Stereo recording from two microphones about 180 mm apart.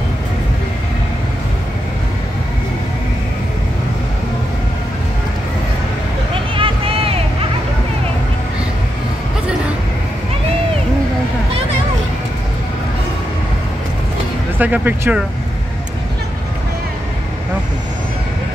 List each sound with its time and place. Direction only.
6.5 s vehicle: 30° right (ahead or behind)
14.6 s speech: 10° right (ahead or behind)